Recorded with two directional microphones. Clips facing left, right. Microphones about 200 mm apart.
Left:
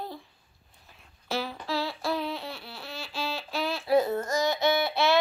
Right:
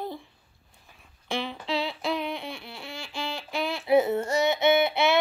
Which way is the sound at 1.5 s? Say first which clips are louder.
Right 2 dB; 20° right (ahead or behind).